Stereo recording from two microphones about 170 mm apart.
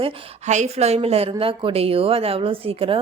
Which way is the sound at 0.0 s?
35° right (ahead or behind).